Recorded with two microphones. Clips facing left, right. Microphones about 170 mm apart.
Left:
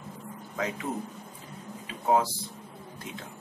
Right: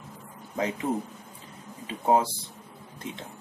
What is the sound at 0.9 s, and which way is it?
Speech, 30° right (ahead or behind).